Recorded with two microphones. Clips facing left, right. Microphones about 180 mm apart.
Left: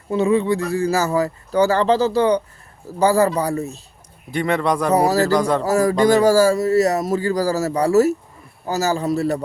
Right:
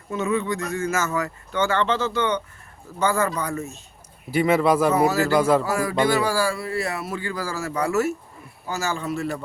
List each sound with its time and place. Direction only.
0.1 s a man's voice: 30° left (ahead or behind)
4.3 s speech: 5° right (ahead or behind)
4.9 s a man's voice: 40° left (ahead or behind)
5.4 s speech: 5° right (ahead or behind)
5.6 s a man's voice: 40° left (ahead or behind)